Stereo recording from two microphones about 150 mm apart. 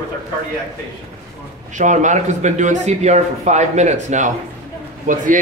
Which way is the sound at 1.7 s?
55° right (ahead or behind).